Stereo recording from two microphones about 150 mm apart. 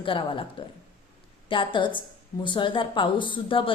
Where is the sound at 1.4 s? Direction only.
35° left (ahead or behind).